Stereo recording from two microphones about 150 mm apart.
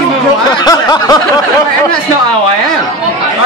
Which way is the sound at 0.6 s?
25° left (ahead or behind).